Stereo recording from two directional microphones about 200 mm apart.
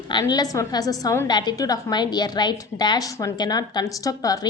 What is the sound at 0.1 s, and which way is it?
A woman's voice, 20° left (ahead or behind).